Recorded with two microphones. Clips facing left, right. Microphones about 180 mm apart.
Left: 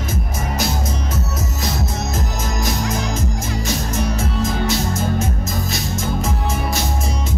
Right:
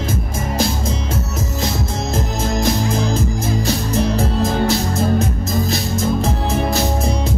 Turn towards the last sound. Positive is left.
turn(degrees=-35)  # may be behind; listen again after turning